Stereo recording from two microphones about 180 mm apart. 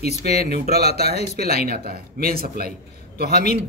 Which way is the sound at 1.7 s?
55° right (ahead or behind).